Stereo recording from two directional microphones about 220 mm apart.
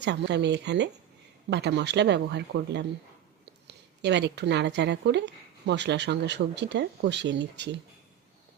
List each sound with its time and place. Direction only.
0.0 s a woman's voice: 50° right (ahead or behind)